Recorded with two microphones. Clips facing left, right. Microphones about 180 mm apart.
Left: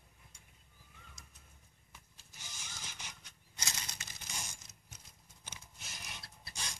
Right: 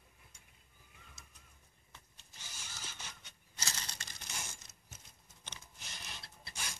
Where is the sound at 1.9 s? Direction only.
10° left (ahead or behind).